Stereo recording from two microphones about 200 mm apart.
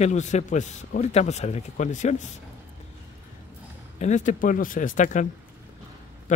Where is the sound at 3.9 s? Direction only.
35° left (ahead or behind).